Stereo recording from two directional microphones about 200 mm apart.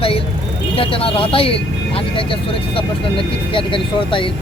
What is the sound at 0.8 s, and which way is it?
Speech, 25° left (ahead or behind).